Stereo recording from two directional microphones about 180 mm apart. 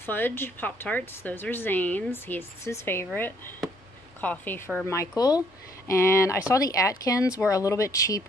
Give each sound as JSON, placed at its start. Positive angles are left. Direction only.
{"t": 0.0, "sound": "a woman's voice", "side_deg": 10}
{"t": 4.2, "sound": "a woman's voice", "side_deg": 10}